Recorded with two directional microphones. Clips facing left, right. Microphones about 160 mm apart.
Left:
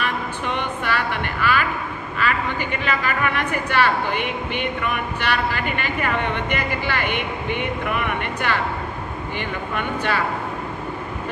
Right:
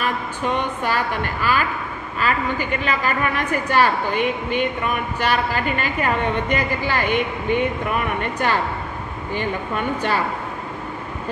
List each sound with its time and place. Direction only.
0.6 s speech: 40° right (ahead or behind)
2.8 s a woman's voice: 40° right (ahead or behind)